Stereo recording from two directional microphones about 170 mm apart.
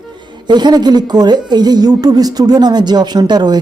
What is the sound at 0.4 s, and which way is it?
A woman's voice, 25° right (ahead or behind).